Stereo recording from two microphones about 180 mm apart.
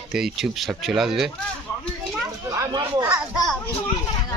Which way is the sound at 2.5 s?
20° right (ahead or behind).